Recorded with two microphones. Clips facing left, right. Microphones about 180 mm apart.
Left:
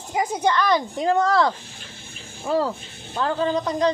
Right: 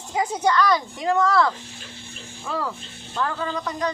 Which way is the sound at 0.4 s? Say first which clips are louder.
Even; 25° left (ahead or behind).